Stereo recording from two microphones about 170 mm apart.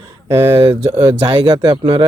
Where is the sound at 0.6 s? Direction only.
25° right (ahead or behind).